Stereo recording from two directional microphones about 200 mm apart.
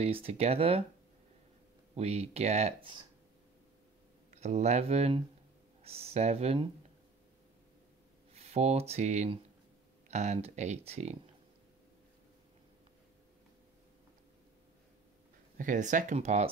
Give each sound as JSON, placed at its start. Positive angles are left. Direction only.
{"t": 0.0, "sound": "speech", "side_deg": -30}
{"t": 2.0, "sound": "speech", "side_deg": -30}
{"t": 4.3, "sound": "speech", "side_deg": -35}
{"t": 8.3, "sound": "speech", "side_deg": -30}
{"t": 15.5, "sound": "speech", "side_deg": -40}